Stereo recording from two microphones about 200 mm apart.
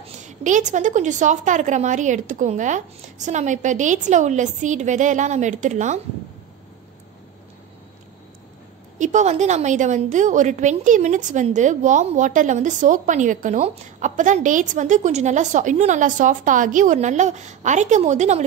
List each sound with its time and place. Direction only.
0.0 s a woman's voice: 35° right (ahead or behind)
8.9 s a woman's voice: 40° right (ahead or behind)